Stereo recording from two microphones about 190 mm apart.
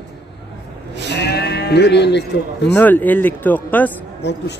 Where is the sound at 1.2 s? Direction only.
60° left (ahead or behind).